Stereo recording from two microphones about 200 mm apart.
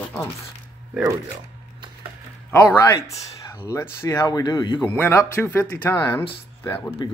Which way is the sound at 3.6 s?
15° left (ahead or behind).